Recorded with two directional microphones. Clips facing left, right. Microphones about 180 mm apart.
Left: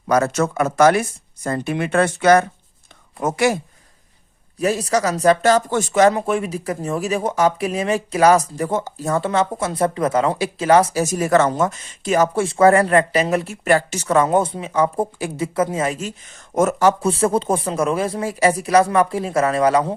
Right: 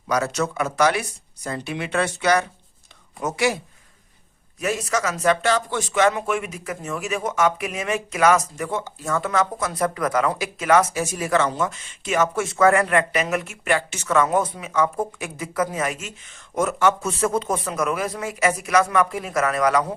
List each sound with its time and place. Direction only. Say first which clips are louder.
0.1 s speech: left 5 dB; 50° left (ahead or behind)
4.5 s speech: left 5 dB; 35° left (ahead or behind)